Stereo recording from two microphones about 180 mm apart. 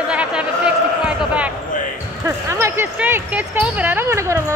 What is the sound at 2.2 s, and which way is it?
Speech, 15° right (ahead or behind).